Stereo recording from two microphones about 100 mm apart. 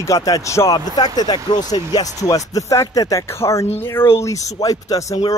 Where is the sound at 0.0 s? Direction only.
35° left (ahead or behind).